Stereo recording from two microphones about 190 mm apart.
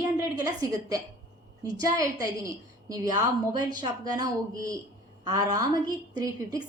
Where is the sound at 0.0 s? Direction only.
20° right (ahead or behind).